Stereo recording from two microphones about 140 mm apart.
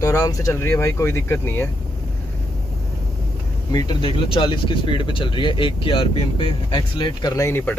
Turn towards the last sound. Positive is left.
turn(degrees=15)  # may be behind; listen again after turning